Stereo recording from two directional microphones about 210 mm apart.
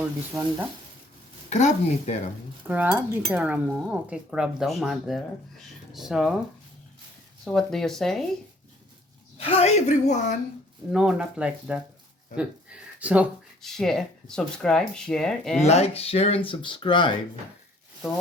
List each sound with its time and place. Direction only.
0.3 s speech: 10° right (ahead or behind)
1.5 s a woman's voice: 35° left (ahead or behind)
2.6 s speech: 10° right (ahead or behind)
7.4 s speech: centre (ahead or behind)
9.4 s a woman's voice: 30° left (ahead or behind)
10.9 s speech: 5° right (ahead or behind)
15.6 s speech: 30° left (ahead or behind)